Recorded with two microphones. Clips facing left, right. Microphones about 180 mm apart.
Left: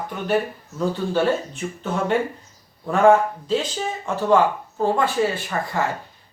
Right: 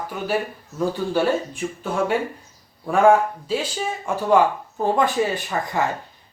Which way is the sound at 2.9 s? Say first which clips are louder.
Even; 10° right (ahead or behind).